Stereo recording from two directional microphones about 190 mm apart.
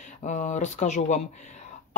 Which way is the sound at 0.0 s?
40° left (ahead or behind).